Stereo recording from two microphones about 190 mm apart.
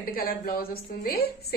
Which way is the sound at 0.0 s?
50° left (ahead or behind).